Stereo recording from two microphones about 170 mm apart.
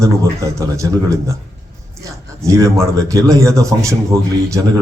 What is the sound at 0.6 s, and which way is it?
Speech, 20° right (ahead or behind).